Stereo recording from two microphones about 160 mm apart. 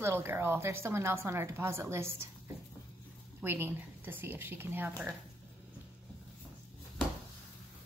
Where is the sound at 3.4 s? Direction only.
10° right (ahead or behind).